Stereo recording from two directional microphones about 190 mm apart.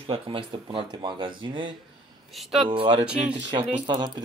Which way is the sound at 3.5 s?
20° right (ahead or behind).